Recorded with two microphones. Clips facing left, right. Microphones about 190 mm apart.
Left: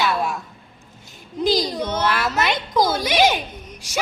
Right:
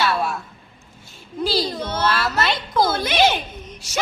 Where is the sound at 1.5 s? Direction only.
15° left (ahead or behind).